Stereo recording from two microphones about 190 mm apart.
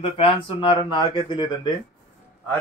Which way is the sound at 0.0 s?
25° left (ahead or behind).